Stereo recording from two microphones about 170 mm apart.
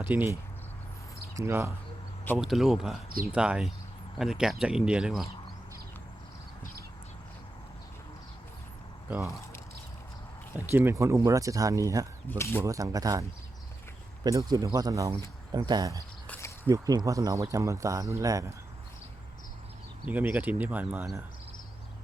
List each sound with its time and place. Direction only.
0.0 s speech: 10° right (ahead or behind)
1.4 s speech: 15° right (ahead or behind)
2.4 s speech: centre (ahead or behind)
9.0 s speech: 10° right (ahead or behind)
10.7 s speech: 15° right (ahead or behind)
12.3 s speech: 15° left (ahead or behind)
12.6 s speech: 20° right (ahead or behind)
14.3 s speech: 20° right (ahead or behind)
16.2 s a sound: 10° left (ahead or behind)
16.6 s speech: 20° right (ahead or behind)
20.1 s speech: 10° right (ahead or behind)